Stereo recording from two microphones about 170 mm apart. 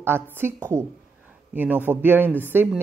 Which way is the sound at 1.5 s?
10° right (ahead or behind).